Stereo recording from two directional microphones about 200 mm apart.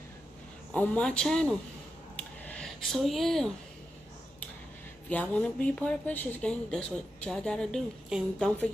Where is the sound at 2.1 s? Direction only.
5° left (ahead or behind).